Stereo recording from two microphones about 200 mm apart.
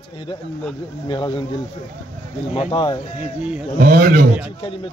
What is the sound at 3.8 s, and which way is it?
Speech, 45° right (ahead or behind).